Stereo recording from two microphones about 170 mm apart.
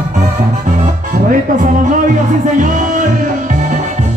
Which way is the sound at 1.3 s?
50° right (ahead or behind).